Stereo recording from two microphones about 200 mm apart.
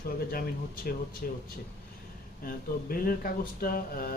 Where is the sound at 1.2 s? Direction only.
45° left (ahead or behind).